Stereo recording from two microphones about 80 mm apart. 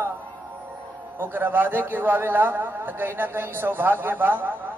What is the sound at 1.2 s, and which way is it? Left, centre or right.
A man's voice, right.